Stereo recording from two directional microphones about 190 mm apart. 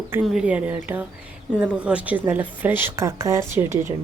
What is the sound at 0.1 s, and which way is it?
A woman's voice, 5° right (ahead or behind).